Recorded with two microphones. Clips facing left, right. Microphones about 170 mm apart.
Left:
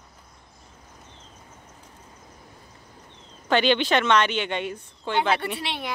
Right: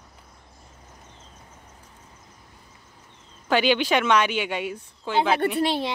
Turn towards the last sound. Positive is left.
turn(degrees=-35)  # may be behind; listen again after turning